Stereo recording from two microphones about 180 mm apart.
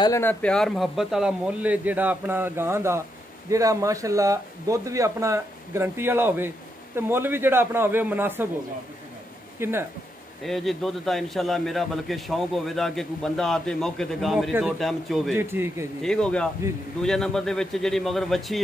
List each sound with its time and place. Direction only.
0.0 s speech: 15° left (ahead or behind); by 8.5 s 10° right (ahead or behind)
9.6 s speech: 15° right (ahead or behind)
10.4 s a man's voice: centre (ahead or behind)
15.3 s speech: 10° right (ahead or behind)
16.0 s a man's voice: 5° left (ahead or behind)